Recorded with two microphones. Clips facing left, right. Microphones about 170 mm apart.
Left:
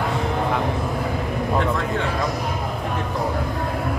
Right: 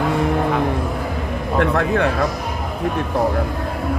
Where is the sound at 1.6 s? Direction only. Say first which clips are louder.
Right 5 dB; 65° right (ahead or behind).